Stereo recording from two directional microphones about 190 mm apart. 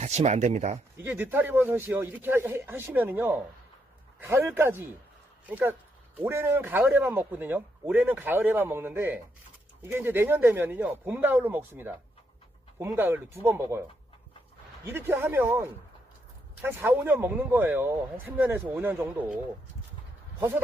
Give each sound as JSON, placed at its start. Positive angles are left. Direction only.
{"t": 0.0, "sound": "speech", "side_deg": -35}
{"t": 1.0, "sound": "a man's voice", "side_deg": -10}
{"t": 6.1, "sound": "a man's voice", "side_deg": -10}
{"t": 14.8, "sound": "a man's voice", "side_deg": -10}
{"t": 16.6, "sound": "a man's voice", "side_deg": -10}